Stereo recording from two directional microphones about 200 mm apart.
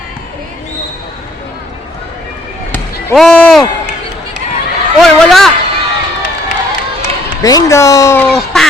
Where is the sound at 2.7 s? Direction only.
5° left (ahead or behind).